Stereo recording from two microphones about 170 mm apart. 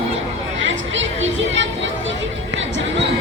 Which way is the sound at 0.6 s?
90° right.